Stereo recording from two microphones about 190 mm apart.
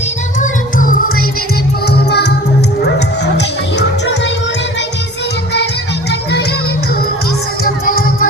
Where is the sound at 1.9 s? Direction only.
60° left (ahead or behind).